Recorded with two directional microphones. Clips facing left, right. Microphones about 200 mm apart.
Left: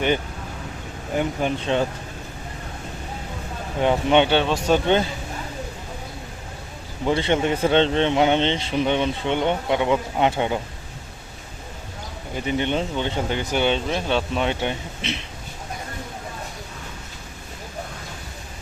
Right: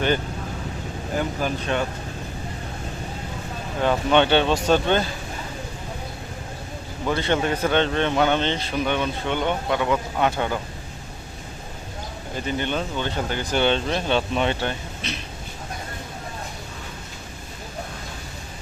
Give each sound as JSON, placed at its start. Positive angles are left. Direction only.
{"t": 1.1, "sound": "speech", "side_deg": 20}
{"t": 3.8, "sound": "speech", "side_deg": 20}
{"t": 4.3, "sound": "speech", "side_deg": 5}
{"t": 7.0, "sound": "speech", "side_deg": 25}
{"t": 12.5, "sound": "speech", "side_deg": 20}
{"t": 13.6, "sound": "speech", "side_deg": 10}
{"t": 14.5, "sound": "speech", "side_deg": 20}